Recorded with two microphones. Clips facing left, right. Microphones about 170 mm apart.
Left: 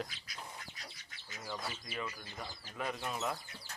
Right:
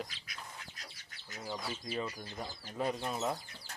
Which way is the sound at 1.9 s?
35° right (ahead or behind).